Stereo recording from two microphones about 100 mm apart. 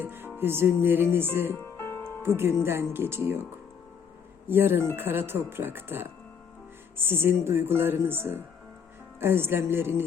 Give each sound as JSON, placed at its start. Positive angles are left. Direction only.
{"t": 0.0, "sound": "speech", "side_deg": -20}
{"t": 1.5, "sound": "music", "side_deg": 20}
{"t": 2.2, "sound": "speech", "side_deg": -25}
{"t": 4.4, "sound": "speech", "side_deg": -20}